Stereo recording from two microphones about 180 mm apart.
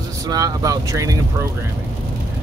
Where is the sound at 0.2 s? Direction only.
20° right (ahead or behind).